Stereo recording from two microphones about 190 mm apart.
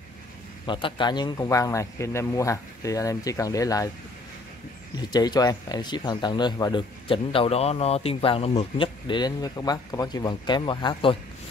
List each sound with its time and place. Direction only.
0.7 s speech: 25° left (ahead or behind)
4.9 s speech: 20° left (ahead or behind)